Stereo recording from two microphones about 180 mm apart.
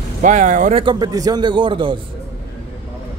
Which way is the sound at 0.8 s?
20° right (ahead or behind).